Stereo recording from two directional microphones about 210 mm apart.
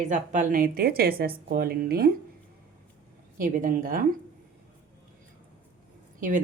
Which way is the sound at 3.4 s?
40° right (ahead or behind).